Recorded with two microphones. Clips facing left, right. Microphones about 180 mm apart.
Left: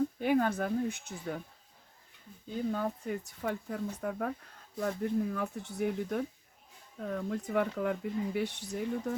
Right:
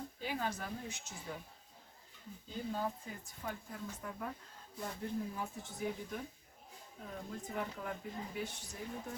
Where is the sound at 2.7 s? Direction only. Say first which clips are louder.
Left 4 dB; 65° left (ahead or behind).